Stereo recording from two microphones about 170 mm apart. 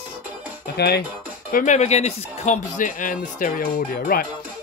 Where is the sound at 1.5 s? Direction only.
50° left (ahead or behind).